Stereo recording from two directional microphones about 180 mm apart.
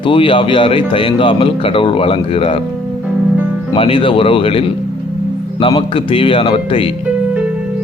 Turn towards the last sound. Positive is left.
turn(degrees=30)  # may be behind; listen again after turning